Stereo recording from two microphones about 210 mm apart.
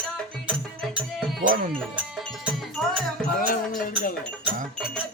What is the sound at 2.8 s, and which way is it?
Music, centre (ahead or behind).